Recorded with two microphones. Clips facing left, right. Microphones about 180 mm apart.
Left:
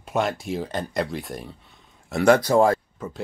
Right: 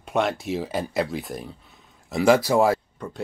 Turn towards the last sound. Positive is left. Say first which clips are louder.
# even
turn(degrees=-5)  # may be behind; listen again after turning